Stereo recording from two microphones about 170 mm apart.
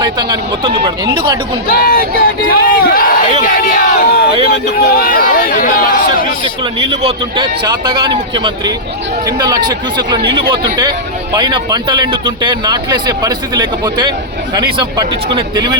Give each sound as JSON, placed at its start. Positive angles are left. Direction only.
{"t": 0.0, "sound": "speech", "side_deg": -25}
{"t": 1.7, "sound": "speech", "side_deg": 60}
{"t": 6.4, "sound": "speech", "side_deg": -35}